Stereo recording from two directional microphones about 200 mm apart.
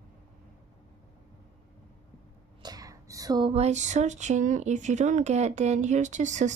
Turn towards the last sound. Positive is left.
turn(degrees=-35)  # may be behind; listen again after turning